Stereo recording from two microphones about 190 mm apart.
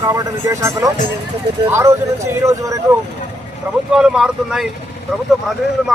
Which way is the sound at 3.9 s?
5° right (ahead or behind).